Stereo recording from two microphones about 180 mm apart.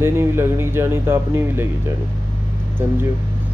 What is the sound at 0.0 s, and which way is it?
Speech, 15° right (ahead or behind).